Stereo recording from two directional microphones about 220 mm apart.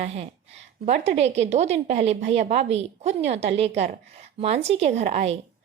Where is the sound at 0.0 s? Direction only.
30° right (ahead or behind).